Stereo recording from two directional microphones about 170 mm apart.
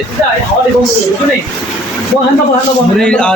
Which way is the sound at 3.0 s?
5° left (ahead or behind).